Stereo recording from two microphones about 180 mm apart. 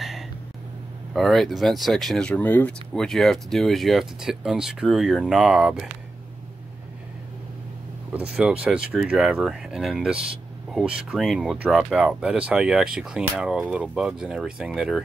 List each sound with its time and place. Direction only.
1.1 s speech: centre (ahead or behind)
8.1 s speech: 5° right (ahead or behind)